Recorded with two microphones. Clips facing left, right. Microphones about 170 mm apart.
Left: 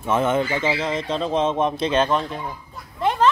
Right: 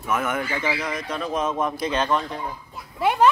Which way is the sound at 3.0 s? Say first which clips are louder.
Right 1 dB; 10° right (ahead or behind).